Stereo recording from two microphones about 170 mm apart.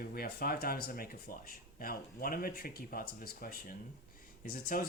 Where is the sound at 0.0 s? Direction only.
60° left (ahead or behind).